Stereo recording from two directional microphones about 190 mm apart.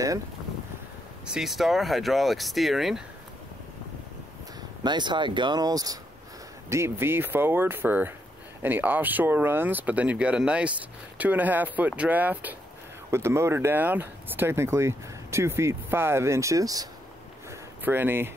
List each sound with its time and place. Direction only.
1.2 s speech: 5° right (ahead or behind)
4.8 s speech: 25° right (ahead or behind)
17.5 s a sound: 10° right (ahead or behind)